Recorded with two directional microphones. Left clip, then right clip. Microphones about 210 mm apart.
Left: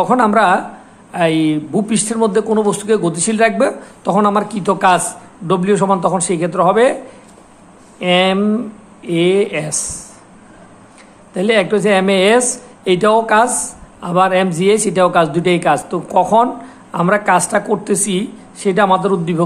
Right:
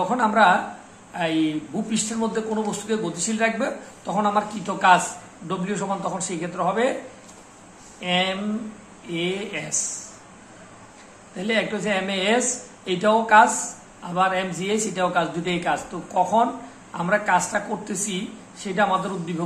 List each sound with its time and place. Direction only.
0.1 s a man's voice: 50° left (ahead or behind)
8.0 s a man's voice: 50° left (ahead or behind)
11.3 s a man's voice: 50° left (ahead or behind)